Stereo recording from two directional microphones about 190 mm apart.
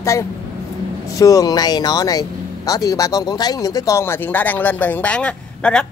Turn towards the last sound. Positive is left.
turn(degrees=5)  # may be behind; listen again after turning